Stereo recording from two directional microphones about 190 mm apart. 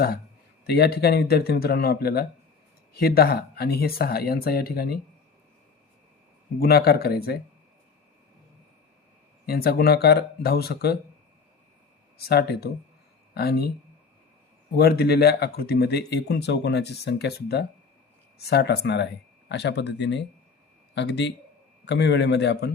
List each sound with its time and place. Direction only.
0.7 s speech: 55° left (ahead or behind)
6.6 s speech: 55° left (ahead or behind)
9.5 s speech: 55° left (ahead or behind)
12.3 s speech: 60° left (ahead or behind)
14.8 s speech: 55° left (ahead or behind)